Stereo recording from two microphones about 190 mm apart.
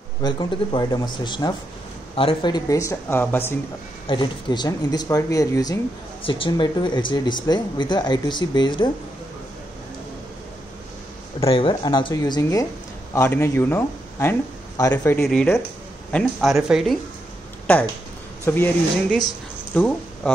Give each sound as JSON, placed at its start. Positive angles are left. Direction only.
{"t": 0.2, "sound": "speech", "side_deg": 25}
{"t": 4.1, "sound": "speech", "side_deg": 25}
{"t": 11.4, "sound": "speech", "side_deg": 30}
{"t": 15.2, "sound": "speech", "side_deg": 5}